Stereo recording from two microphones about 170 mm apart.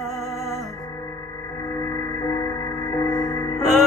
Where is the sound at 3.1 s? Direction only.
5° left (ahead or behind).